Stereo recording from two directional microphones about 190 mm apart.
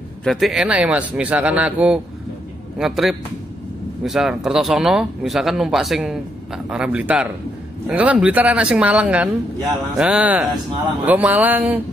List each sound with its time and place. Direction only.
0.2 s speech: centre (ahead or behind)